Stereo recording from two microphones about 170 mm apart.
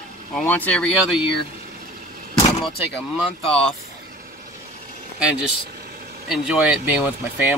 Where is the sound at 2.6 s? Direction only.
Centre (ahead or behind).